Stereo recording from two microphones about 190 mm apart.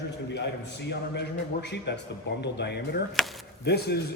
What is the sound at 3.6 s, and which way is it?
Speech, 60° left (ahead or behind).